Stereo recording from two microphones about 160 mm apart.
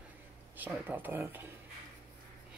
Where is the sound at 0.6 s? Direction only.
10° right (ahead or behind).